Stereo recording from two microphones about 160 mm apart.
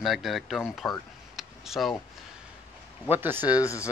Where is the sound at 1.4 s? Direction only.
Centre (ahead or behind).